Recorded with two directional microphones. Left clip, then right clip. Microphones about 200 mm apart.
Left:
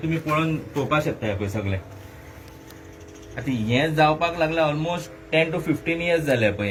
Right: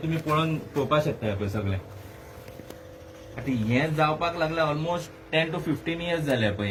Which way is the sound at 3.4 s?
55° left (ahead or behind).